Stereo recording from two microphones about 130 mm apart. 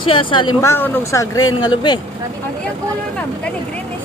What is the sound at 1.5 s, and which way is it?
Speech, 35° left (ahead or behind).